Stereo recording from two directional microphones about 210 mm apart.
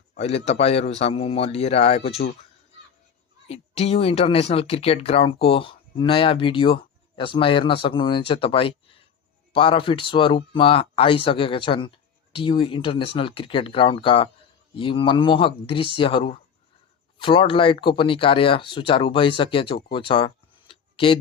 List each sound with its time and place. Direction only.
0.2 s speech: 30° left (ahead or behind)
3.4 s speech: 30° left (ahead or behind)